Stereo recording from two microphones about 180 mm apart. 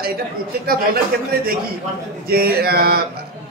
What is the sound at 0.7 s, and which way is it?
A man's voice, 55° right (ahead or behind).